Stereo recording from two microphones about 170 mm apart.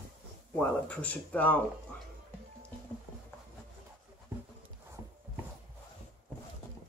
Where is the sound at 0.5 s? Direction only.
10° left (ahead or behind).